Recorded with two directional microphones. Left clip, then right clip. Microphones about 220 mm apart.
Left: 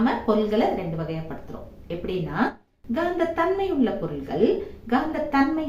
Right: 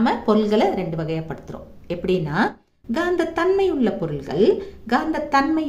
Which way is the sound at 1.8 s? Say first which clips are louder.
Right 6 dB; 55° right (ahead or behind).